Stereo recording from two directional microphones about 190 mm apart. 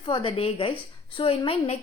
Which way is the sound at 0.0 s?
25° left (ahead or behind).